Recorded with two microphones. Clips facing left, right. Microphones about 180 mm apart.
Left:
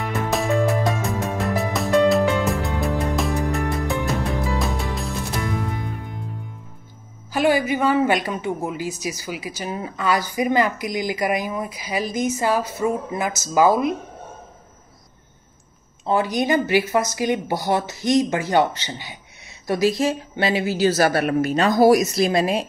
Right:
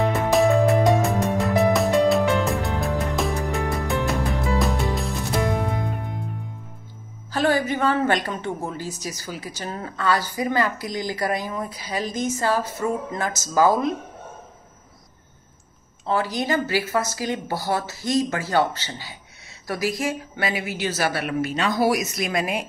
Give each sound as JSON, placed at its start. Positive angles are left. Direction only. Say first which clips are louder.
{"t": 0.3, "sound": "music", "louder": "right 3 dB", "side_deg": 0}
{"t": 7.3, "sound": "a woman's voice", "louder": "left 2 dB", "side_deg": 10}
{"t": 16.1, "sound": "a woman's voice", "louder": "left 3 dB", "side_deg": 20}